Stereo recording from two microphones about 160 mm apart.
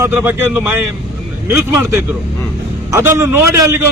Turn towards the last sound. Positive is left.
turn(degrees=-15)  # may be behind; listen again after turning